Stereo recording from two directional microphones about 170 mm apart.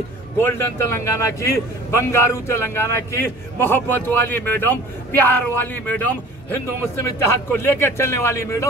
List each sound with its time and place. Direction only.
0.4 s a man's voice: 15° left (ahead or behind)